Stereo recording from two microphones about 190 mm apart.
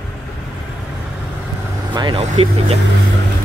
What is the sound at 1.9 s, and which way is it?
Speech, 25° right (ahead or behind).